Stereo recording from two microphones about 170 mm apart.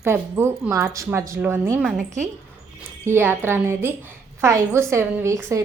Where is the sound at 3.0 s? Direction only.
15° right (ahead or behind).